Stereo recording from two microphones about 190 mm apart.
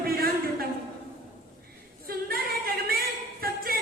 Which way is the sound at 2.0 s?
50° right (ahead or behind).